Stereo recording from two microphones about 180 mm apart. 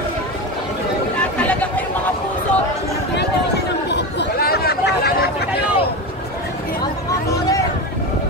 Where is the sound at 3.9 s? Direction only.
70° left (ahead or behind).